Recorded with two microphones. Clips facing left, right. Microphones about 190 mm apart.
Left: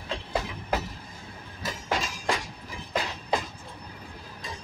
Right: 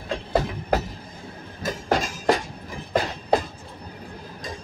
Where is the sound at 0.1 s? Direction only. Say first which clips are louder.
Right 7 dB; 45° right (ahead or behind).